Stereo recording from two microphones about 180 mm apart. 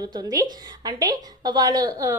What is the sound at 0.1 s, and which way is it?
A woman's voice, 20° right (ahead or behind).